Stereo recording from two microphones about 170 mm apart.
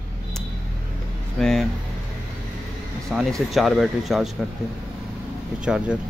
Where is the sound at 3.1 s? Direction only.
5° right (ahead or behind).